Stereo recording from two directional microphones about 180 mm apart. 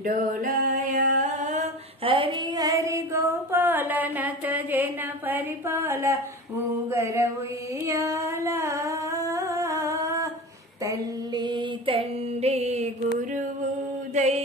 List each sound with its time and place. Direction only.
0.0 s a sound: 50° right (ahead or behind)
2.0 s female singing: 30° right (ahead or behind); by 6.1 s 15° right (ahead or behind)
6.9 s mantra: 15° right (ahead or behind)
7.8 s humming: 15° right (ahead or behind)
10.9 s mantra: 25° right (ahead or behind)
14.1 s mantra: 40° right (ahead or behind)